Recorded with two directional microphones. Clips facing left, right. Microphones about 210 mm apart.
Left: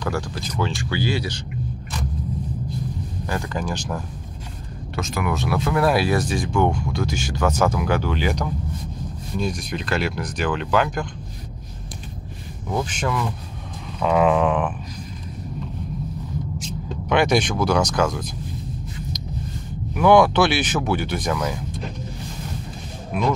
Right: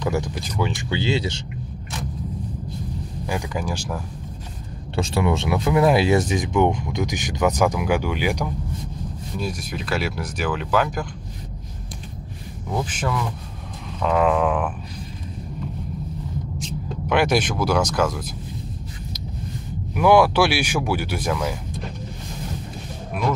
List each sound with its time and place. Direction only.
0.0 s speech: 20° right (ahead or behind)
3.3 s speech: 10° right (ahead or behind)
4.9 s speech: 30° right (ahead or behind); by 11.1 s 5° right (ahead or behind)
12.7 s speech: 5° right (ahead or behind)
17.1 s speech: 5° right (ahead or behind)
19.9 s speech: 5° right (ahead or behind)